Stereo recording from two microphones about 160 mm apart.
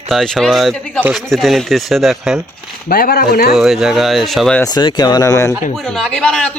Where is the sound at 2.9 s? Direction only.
70° left (ahead or behind).